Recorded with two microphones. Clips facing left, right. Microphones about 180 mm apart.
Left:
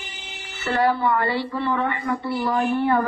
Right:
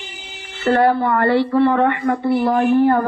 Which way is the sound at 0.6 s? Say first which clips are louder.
Right 6 dB; 50° right (ahead or behind).